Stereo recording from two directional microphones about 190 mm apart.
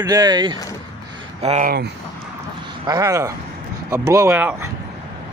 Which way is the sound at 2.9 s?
15° right (ahead or behind).